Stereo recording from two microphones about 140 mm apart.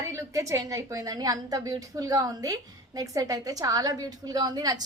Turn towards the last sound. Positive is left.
turn(degrees=-30)  # may be behind; listen again after turning